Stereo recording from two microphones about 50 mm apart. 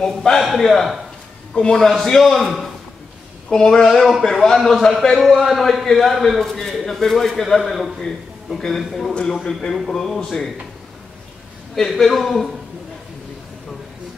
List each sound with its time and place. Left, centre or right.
0.4 s a man's voice: centre
1.5 s a man's voice: centre
3.4 s a man's voice: centre
11.7 s a man's voice: centre